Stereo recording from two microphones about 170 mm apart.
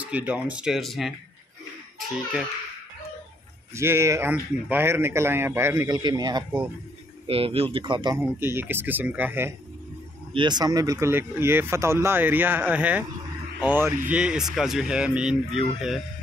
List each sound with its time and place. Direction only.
0.1 s speech: 10° right (ahead or behind)
3.7 s speech: 15° right (ahead or behind)
8.4 s speech: 15° right (ahead or behind)
10.3 s speech: 25° right (ahead or behind); by 16.0 s 5° right (ahead or behind)